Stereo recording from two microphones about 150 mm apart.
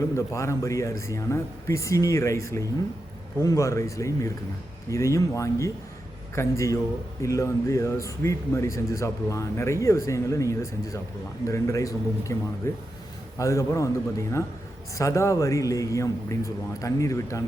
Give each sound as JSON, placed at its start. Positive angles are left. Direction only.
{"t": 0.2, "sound": "speech", "side_deg": 20}